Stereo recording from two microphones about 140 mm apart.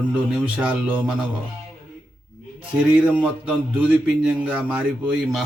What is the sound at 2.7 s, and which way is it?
A man's voice, 10° right (ahead or behind).